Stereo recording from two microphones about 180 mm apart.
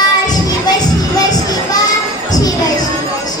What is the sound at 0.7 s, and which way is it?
Children playing, 20° left (ahead or behind).